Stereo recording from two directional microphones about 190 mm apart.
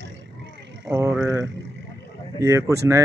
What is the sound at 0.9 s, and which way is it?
Speech, 10° right (ahead or behind).